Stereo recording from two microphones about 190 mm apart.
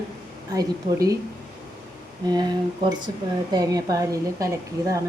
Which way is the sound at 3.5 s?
20° right (ahead or behind).